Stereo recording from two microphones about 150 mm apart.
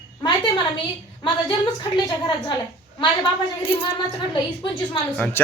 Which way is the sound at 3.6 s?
35° left (ahead or behind).